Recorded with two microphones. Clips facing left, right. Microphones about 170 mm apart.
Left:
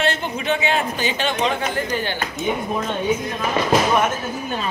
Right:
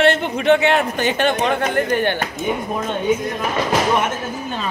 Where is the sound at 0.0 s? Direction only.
65° right (ahead or behind).